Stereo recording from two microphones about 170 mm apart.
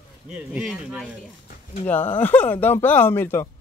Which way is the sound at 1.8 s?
10° left (ahead or behind).